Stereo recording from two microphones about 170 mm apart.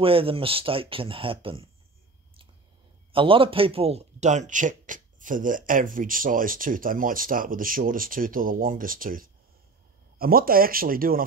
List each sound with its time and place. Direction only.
0.0 s speech: 35° right (ahead or behind)
3.1 s speech: 30° right (ahead or behind); by 11.2 s 60° right (ahead or behind)